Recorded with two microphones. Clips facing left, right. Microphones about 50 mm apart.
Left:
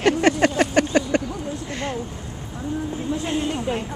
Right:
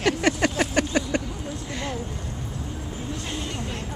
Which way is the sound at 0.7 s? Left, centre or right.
Left.